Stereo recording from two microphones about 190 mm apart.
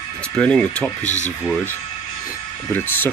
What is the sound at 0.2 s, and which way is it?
Speech, 5° left (ahead or behind).